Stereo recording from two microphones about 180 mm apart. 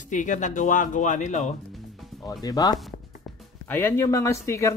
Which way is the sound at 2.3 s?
20° left (ahead or behind).